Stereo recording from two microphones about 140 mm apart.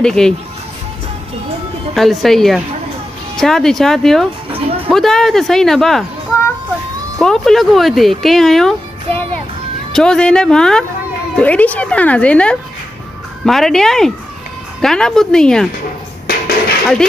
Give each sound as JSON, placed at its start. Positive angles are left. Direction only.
{"t": 0.0, "sound": "speech", "side_deg": 5}
{"t": 2.0, "sound": "speech", "side_deg": 0}
{"t": 7.2, "sound": "speech", "side_deg": 5}
{"t": 16.3, "sound": "a sound", "side_deg": 90}